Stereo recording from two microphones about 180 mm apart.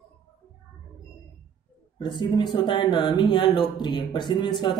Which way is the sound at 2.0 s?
25° left (ahead or behind).